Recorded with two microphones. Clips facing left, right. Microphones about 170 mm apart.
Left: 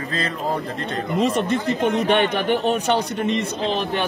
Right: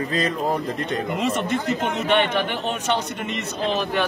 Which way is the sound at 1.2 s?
35° left (ahead or behind).